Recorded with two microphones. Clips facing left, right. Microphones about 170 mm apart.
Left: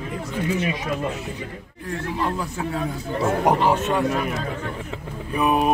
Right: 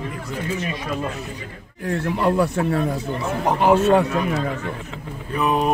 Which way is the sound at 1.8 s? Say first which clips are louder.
Right 5 dB; 70° right (ahead or behind).